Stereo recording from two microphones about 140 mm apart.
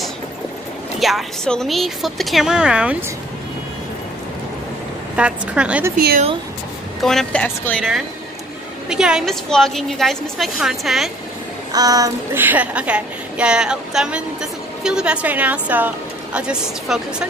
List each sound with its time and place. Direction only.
0.9 s a woman's voice: centre (ahead or behind)
5.1 s a woman's voice: 10° right (ahead or behind)
7.0 s a woman's voice: centre (ahead or behind)
7.4 s speech: 15° left (ahead or behind)
8.8 s a woman's voice: 5° right (ahead or behind)
11.7 s child singing: 25° right (ahead or behind)
12.4 s a woman's voice: 10° right (ahead or behind)